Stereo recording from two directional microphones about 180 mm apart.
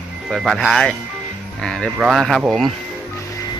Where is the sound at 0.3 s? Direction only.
Centre (ahead or behind).